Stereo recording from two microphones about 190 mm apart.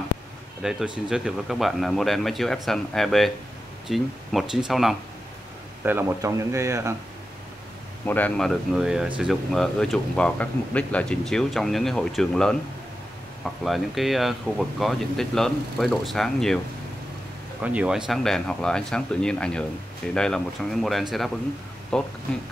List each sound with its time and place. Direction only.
0.6 s speech: 5° right (ahead or behind)
5.9 s speech: 10° right (ahead or behind)
8.0 s speech: 10° left (ahead or behind)
13.7 s speech: centre (ahead or behind)
17.6 s speech: 5° right (ahead or behind)